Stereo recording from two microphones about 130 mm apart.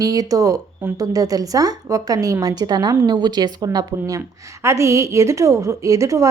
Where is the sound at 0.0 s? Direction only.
30° right (ahead or behind).